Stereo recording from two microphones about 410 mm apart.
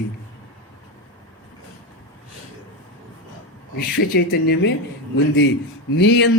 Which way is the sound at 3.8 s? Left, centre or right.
Left.